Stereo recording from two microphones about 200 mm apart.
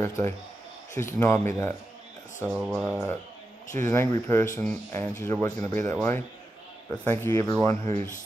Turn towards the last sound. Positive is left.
turn(degrees=15)  # may be behind; listen again after turning